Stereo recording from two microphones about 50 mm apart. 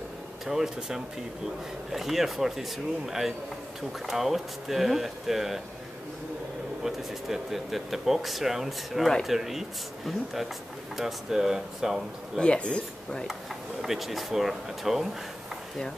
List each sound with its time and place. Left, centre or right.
0.7 s speech: centre
6.8 s speech: centre
12.4 s speech: left
13.3 s speech: centre